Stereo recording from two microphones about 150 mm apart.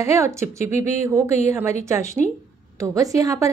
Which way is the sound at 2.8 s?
20° right (ahead or behind).